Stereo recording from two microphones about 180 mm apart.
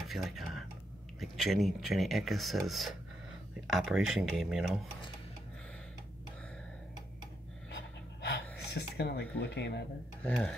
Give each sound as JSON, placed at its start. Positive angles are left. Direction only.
{"t": 0.1, "sound": "speech", "side_deg": 0}
{"t": 7.7, "sound": "pant", "side_deg": 65}
{"t": 10.2, "sound": "speech", "side_deg": 5}